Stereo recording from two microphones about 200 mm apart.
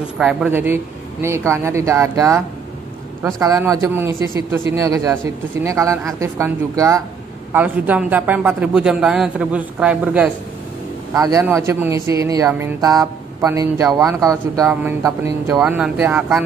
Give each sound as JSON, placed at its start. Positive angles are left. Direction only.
{"t": 0.2, "sound": "speech", "side_deg": -5}
{"t": 11.1, "sound": "speech", "side_deg": -15}